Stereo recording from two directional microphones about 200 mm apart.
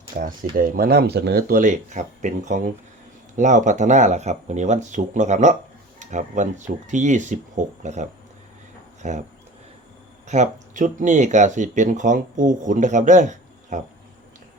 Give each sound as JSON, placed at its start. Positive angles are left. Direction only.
{"t": 0.2, "sound": "speech", "side_deg": -45}
{"t": 10.2, "sound": "speech", "side_deg": -35}